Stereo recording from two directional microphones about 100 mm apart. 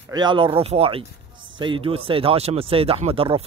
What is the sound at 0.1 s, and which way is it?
Speech, 50° right (ahead or behind).